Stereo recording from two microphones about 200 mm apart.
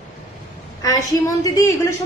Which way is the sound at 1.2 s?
15° left (ahead or behind).